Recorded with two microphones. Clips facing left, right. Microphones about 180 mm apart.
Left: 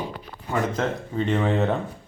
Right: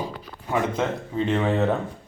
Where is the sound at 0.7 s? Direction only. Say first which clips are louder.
Even; centre (ahead or behind).